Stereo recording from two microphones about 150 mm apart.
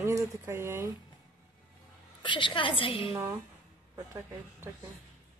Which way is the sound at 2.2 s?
35° left (ahead or behind).